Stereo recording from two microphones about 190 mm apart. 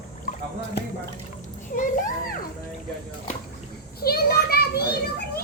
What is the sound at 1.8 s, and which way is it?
Speech, 45° left (ahead or behind).